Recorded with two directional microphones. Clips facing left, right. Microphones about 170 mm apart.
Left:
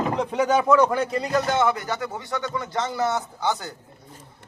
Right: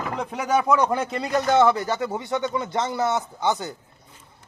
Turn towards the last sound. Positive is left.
turn(degrees=-20)  # may be behind; listen again after turning